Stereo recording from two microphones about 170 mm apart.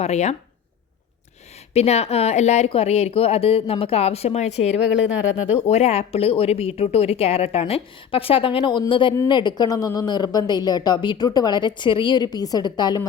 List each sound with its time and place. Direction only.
0.0 s a woman's voice: 40° left (ahead or behind)
1.7 s a woman's voice: 40° left (ahead or behind)